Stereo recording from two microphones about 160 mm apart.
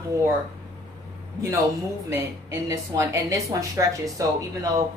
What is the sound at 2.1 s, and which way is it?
A woman's voice, 15° right (ahead or behind).